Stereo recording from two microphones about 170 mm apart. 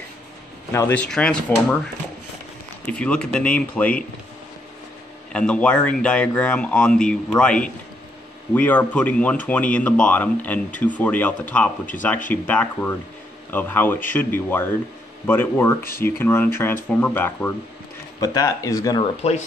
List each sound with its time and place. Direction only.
0.7 s speech: 15° left (ahead or behind)
2.9 s speech: 5° left (ahead or behind)
5.3 s speech: 5° left (ahead or behind)
18.2 s speech: 20° left (ahead or behind)